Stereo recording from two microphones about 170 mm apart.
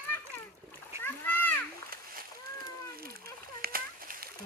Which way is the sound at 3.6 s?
60° right (ahead or behind).